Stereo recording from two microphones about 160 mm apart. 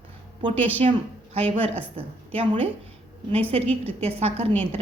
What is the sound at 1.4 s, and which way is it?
A woman's voice, 40° right (ahead or behind).